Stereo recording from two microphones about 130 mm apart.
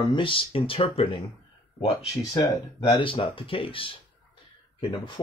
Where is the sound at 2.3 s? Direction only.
35° left (ahead or behind).